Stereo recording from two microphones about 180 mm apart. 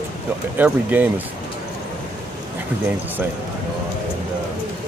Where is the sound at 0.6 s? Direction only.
10° right (ahead or behind).